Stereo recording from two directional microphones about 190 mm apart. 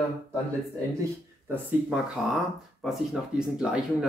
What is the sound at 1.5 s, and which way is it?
Speech, 10° right (ahead or behind).